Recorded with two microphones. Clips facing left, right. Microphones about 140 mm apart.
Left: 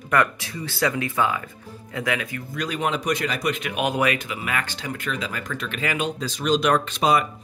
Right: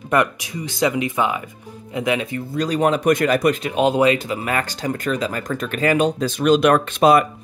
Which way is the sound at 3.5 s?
30° right (ahead or behind).